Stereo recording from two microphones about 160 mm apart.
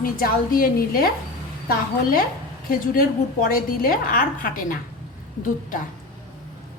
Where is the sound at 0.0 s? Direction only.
65° left (ahead or behind).